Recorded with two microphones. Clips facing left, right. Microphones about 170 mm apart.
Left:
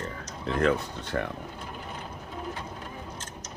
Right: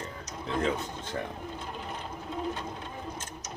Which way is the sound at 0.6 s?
65° left (ahead or behind).